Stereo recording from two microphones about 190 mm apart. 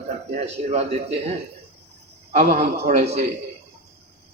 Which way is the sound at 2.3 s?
40° right (ahead or behind).